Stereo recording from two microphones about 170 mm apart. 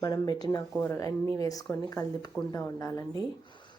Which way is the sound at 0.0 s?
25° left (ahead or behind).